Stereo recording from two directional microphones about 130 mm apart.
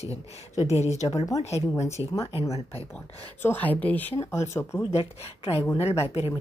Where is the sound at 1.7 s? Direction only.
20° left (ahead or behind).